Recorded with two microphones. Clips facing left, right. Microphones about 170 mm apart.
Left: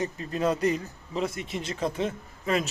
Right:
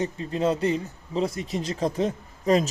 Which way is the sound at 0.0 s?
25° right (ahead or behind).